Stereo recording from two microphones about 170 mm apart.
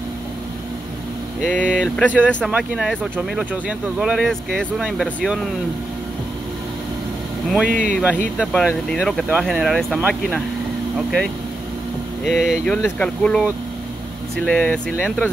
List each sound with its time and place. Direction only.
1.4 s speech: 5° left (ahead or behind)
7.4 s speech: centre (ahead or behind)
7.7 s speech: 50° right (ahead or behind)
8.4 s speech: centre (ahead or behind)
11.0 s speech: centre (ahead or behind)
12.3 s speech: centre (ahead or behind)